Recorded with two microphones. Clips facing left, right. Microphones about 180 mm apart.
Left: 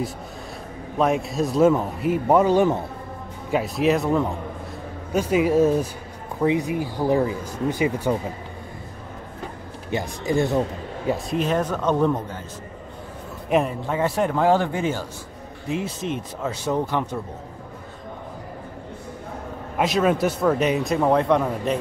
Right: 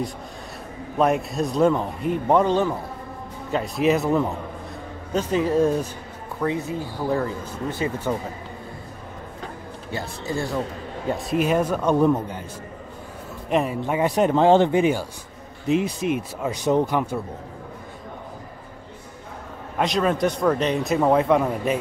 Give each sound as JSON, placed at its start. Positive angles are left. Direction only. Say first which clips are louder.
{"t": 0.9, "sound": "speech", "louder": "even", "side_deg": 0}
{"t": 5.1, "sound": "speech", "louder": "left 2 dB", "side_deg": 10}
{"t": 9.8, "sound": "a man's voice", "louder": "left 5 dB", "side_deg": 20}
{"t": 11.1, "sound": "speech", "louder": "right 1 dB", "side_deg": 0}
{"t": 13.5, "sound": "a man's voice", "louder": "left 1 dB", "side_deg": 0}
{"t": 13.8, "sound": "speech", "louder": "right 2 dB", "side_deg": -15}
{"t": 19.8, "sound": "speech", "louder": "left 1 dB", "side_deg": 5}